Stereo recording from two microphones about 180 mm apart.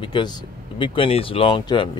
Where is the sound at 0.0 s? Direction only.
25° left (ahead or behind).